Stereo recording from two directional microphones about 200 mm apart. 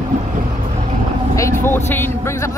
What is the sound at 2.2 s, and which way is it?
Speech, 15° left (ahead or behind).